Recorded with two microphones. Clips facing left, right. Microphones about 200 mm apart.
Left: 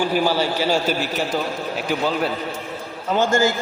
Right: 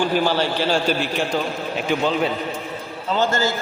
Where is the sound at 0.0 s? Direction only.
10° left (ahead or behind).